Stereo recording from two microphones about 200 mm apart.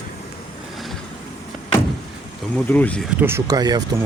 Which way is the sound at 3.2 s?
10° right (ahead or behind).